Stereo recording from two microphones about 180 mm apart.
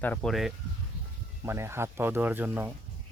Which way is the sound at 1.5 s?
15° right (ahead or behind).